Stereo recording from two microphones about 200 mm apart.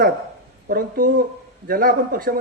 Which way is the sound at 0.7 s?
45° right (ahead or behind).